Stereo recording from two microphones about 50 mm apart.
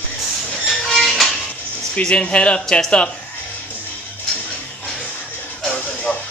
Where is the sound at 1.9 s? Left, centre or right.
Centre.